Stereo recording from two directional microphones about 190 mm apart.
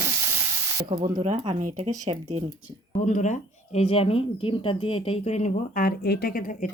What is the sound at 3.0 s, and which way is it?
Speech, 40° left (ahead or behind).